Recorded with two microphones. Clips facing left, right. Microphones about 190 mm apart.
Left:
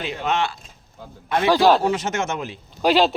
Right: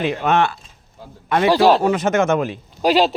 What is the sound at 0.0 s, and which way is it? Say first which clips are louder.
Speech: right 6 dB; 55° right (ahead or behind).